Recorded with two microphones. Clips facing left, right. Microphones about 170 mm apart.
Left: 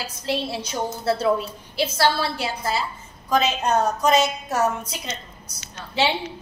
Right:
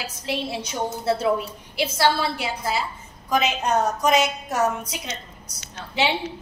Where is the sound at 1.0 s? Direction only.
20° right (ahead or behind).